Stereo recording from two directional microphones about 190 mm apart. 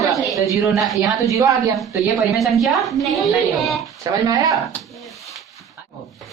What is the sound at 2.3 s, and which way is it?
A woman's voice, centre (ahead or behind).